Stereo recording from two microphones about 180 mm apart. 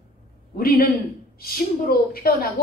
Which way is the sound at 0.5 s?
55° left (ahead or behind).